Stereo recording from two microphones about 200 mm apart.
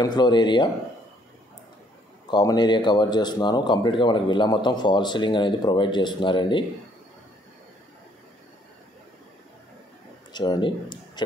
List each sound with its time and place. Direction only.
0.0 s speech: 20° left (ahead or behind)
2.3 s speech: 20° left (ahead or behind)
10.3 s speech: 20° left (ahead or behind)